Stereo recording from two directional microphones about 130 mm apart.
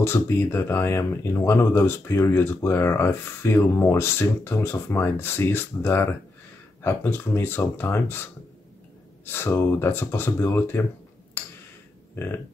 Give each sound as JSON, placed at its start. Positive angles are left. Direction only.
{"t": 0.0, "sound": "speech", "side_deg": 20}
{"t": 9.2, "sound": "speech", "side_deg": 15}